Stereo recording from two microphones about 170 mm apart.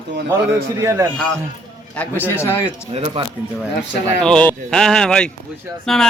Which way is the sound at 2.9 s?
30° right (ahead or behind).